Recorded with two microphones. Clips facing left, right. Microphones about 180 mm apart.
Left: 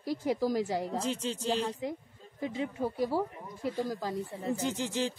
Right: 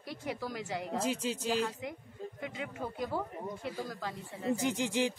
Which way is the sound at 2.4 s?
30° left (ahead or behind).